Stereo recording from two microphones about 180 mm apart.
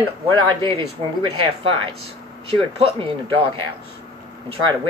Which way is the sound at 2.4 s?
30° right (ahead or behind).